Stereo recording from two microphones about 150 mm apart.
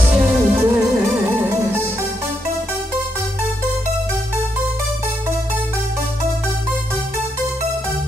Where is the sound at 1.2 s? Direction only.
15° right (ahead or behind).